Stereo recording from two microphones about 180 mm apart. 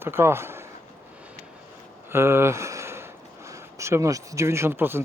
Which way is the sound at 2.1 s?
15° right (ahead or behind).